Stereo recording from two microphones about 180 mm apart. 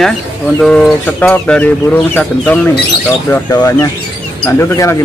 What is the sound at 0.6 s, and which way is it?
Speech, 5° left (ahead or behind).